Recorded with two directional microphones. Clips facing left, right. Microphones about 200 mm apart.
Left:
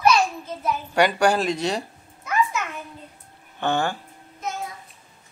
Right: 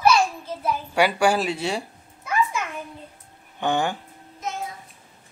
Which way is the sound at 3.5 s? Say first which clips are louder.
Even; 15° right (ahead or behind).